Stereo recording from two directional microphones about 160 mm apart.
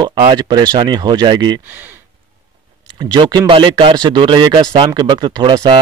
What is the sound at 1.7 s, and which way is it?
Speech, 10° right (ahead or behind).